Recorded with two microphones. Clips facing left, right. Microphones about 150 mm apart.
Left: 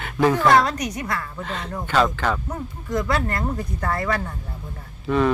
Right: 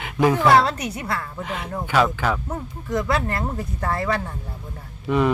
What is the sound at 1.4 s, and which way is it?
Speech, 15° right (ahead or behind).